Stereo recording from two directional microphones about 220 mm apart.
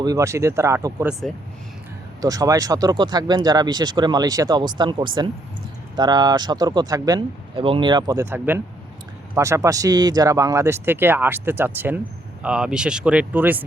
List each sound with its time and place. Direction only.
0.0 s speech: 15° right (ahead or behind)
1.3 s speech: centre (ahead or behind)
2.2 s speech: 15° right (ahead or behind)